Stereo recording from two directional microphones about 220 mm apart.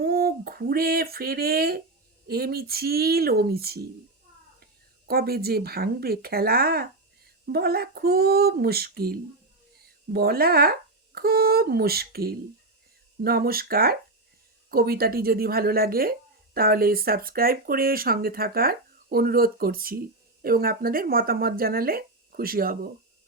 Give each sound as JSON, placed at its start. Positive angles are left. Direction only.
{"t": 0.0, "sound": "speech", "side_deg": -45}
{"t": 5.0, "sound": "speech", "side_deg": -45}